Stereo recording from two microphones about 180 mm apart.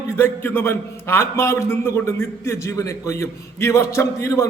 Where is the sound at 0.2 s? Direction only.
10° left (ahead or behind).